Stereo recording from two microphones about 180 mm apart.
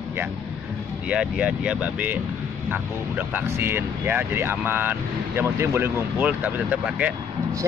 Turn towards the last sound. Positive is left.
turn(degrees=-5)  # may be behind; listen again after turning